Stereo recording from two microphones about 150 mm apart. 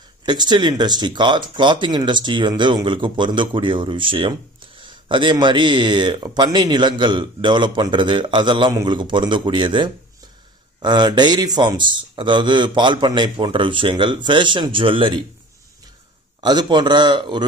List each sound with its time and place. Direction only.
0.2 s speech: 30° right (ahead or behind)
16.3 s speech: 30° right (ahead or behind)